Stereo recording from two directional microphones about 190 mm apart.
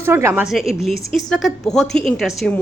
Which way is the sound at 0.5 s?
Centre (ahead or behind).